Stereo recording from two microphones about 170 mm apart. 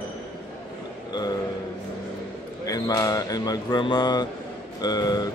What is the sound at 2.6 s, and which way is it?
Mantra, 20° left (ahead or behind).